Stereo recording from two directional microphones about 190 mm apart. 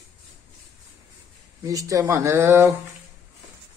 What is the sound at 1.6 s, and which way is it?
Speech, 15° right (ahead or behind).